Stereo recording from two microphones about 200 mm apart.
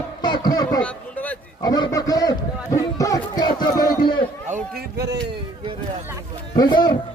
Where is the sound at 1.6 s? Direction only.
20° left (ahead or behind).